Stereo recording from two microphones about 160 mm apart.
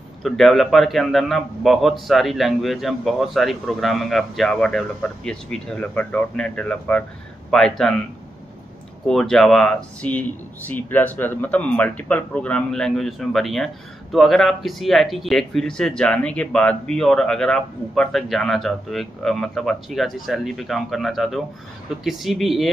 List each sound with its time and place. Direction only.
0.2 s a man's voice: centre (ahead or behind)
9.0 s a man's voice: centre (ahead or behind)